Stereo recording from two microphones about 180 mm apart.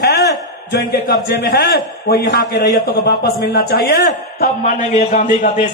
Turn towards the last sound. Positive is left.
turn(degrees=45)  # may be behind; listen again after turning